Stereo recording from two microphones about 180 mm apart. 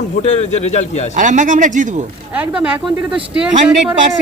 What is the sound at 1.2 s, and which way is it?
Speech, 45° right (ahead or behind).